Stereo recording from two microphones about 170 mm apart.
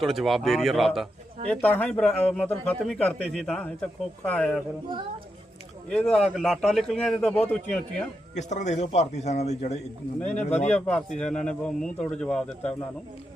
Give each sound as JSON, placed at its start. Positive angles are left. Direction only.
{"t": 0.0, "sound": "a man's voice", "side_deg": 0}
{"t": 1.5, "sound": "a man's voice", "side_deg": 10}
{"t": 5.9, "sound": "a man's voice", "side_deg": 5}
{"t": 8.4, "sound": "a man's voice", "side_deg": 45}
{"t": 10.8, "sound": "a man's voice", "side_deg": 5}